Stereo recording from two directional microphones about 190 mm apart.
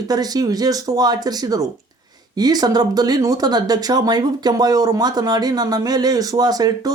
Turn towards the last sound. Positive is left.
turn(degrees=-20)  # may be behind; listen again after turning